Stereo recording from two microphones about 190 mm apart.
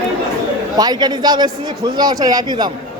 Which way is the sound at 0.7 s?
20° right (ahead or behind).